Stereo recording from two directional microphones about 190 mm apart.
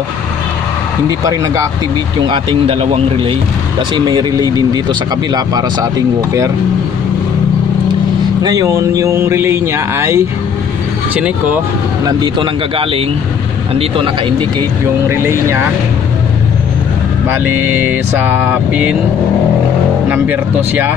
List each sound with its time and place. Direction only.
2.2 s speech: 25° right (ahead or behind)
8.4 s speech: 20° right (ahead or behind)
12.1 s speech: 25° right (ahead or behind)
15.0 s speech: 15° right (ahead or behind)
17.3 s speech: 10° right (ahead or behind)
20.1 s speech: 10° right (ahead or behind)